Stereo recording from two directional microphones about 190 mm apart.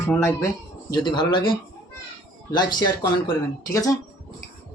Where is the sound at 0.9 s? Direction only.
25° left (ahead or behind).